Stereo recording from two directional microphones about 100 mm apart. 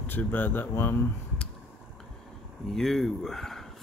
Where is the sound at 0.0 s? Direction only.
20° left (ahead or behind).